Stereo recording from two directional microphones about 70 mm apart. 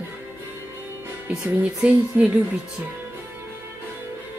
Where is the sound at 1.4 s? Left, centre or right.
Centre.